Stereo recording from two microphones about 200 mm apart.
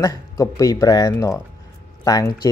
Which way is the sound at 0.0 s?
15° left (ahead or behind).